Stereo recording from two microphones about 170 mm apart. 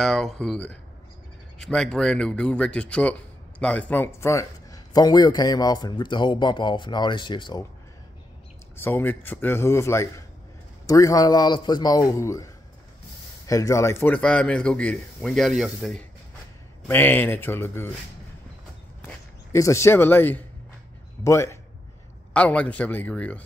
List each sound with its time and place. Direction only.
0.0 s a man's voice: centre (ahead or behind); by 7.6 s 30° left (ahead or behind)
8.7 s a man's voice: 10° left (ahead or behind)
13.5 s a man's voice: 20° left (ahead or behind)
19.5 s a man's voice: 15° left (ahead or behind)